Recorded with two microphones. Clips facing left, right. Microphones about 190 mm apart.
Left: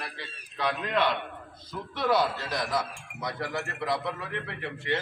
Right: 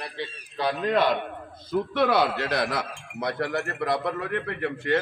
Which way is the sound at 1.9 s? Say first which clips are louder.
Right 2 dB; 65° right (ahead or behind).